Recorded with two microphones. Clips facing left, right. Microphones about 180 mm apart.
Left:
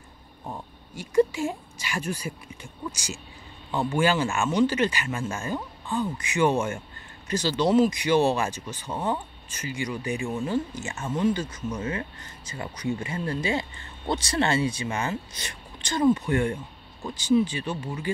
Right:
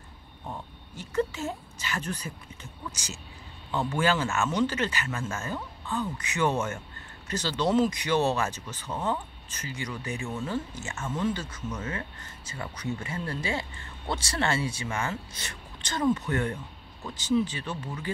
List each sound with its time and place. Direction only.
0.5 s speech: 10° left (ahead or behind)